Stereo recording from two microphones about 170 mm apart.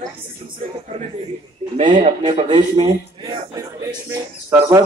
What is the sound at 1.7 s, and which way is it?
Speech, 40° right (ahead or behind).